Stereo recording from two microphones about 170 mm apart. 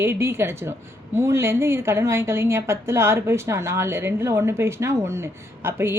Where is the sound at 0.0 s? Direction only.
15° right (ahead or behind).